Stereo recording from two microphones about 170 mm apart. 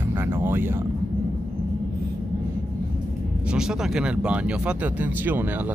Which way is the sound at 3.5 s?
5° right (ahead or behind).